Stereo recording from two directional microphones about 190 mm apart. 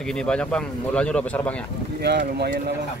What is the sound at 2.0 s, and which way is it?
Speech, 60° right (ahead or behind).